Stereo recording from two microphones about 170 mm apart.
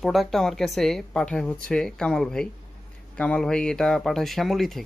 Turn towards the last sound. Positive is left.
turn(degrees=0)  # may be behind; listen again after turning